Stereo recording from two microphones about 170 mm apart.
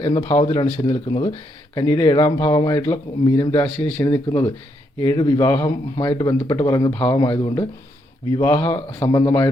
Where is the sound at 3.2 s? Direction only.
25° left (ahead or behind).